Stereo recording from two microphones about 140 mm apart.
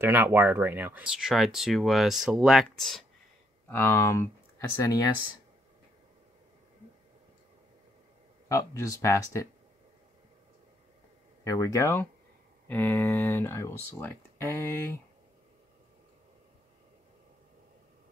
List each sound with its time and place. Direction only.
0.0 s speech: 15° right (ahead or behind); by 3.1 s centre (ahead or behind)
3.6 s speech: 15° left (ahead or behind)
8.5 s speech: 20° left (ahead or behind)
11.4 s speech: 25° left (ahead or behind)